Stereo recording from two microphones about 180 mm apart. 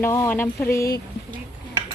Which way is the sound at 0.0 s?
15° left (ahead or behind).